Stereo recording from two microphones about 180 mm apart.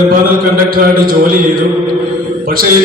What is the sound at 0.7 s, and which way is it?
Speech, 55° right (ahead or behind).